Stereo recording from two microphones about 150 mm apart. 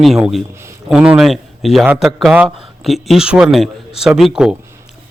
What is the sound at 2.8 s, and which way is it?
Speech, centre (ahead or behind).